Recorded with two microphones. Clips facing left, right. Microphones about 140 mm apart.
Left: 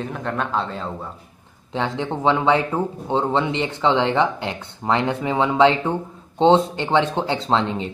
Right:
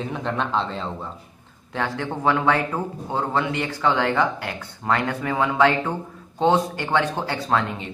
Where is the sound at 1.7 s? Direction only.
20° left (ahead or behind).